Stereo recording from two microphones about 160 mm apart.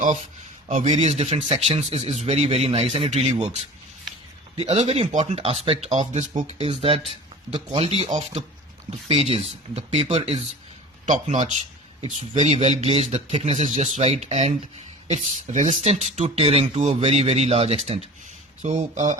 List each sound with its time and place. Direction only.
0.0 s speech: 50° right (ahead or behind)
4.6 s speech: 40° right (ahead or behind)